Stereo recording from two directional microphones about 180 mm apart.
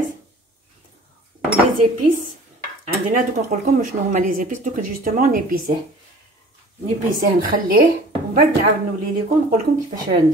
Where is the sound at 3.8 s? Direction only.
45° right (ahead or behind).